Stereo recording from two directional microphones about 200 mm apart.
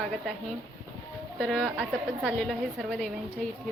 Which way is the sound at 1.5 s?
Centre (ahead or behind).